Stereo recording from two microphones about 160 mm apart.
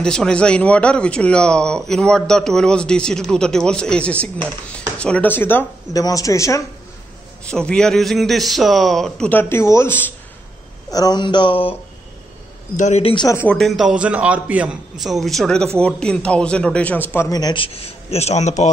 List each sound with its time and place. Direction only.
0.0 s speech: 5° left (ahead or behind)
7.4 s speech: 5° left (ahead or behind)
10.9 s speech: 25° left (ahead or behind)
12.7 s speech: 50° left (ahead or behind)
13.0 s speech: 30° left (ahead or behind)
13.4 s a man's voice: 5° left (ahead or behind)
17.3 s speech: 25° left (ahead or behind)
17.8 s a man's voice: 40° left (ahead or behind)